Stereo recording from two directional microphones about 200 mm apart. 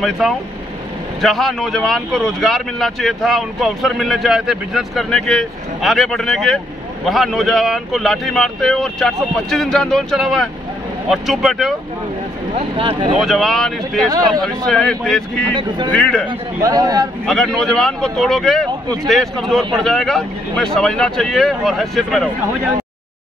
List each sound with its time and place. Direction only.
0.0 s speech: centre (ahead or behind)
12.5 s speech: 25° right (ahead or behind)
13.2 s speech: centre (ahead or behind)
14.1 s speech: 20° right (ahead or behind)
14.7 s speech: 5° left (ahead or behind)
16.3 s speech: 20° right (ahead or behind)
17.3 s speech: centre (ahead or behind)